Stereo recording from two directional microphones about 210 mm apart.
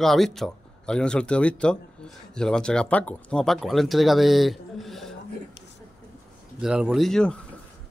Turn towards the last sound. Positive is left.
turn(degrees=5)  # may be behind; listen again after turning